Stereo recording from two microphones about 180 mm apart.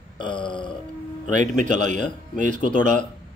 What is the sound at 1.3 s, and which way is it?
Speech, 45° right (ahead or behind).